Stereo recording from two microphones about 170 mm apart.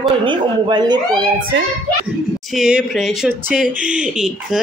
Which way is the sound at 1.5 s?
90° right.